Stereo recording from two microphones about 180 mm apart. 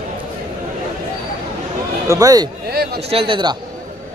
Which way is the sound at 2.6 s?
60° right (ahead or behind).